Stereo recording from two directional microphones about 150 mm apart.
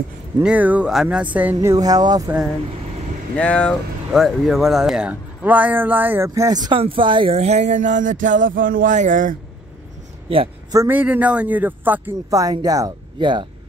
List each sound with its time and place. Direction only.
0.4 s speech: 10° right (ahead or behind); by 2.3 s 25° right (ahead or behind)
3.3 s speech: 10° left (ahead or behind); by 9.4 s 60° right (ahead or behind)
10.7 s speech: 15° right (ahead or behind)
12.3 s speech: 25° right (ahead or behind)